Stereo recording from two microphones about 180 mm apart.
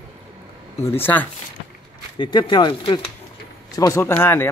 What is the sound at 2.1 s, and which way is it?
Speech, 25° left (ahead or behind).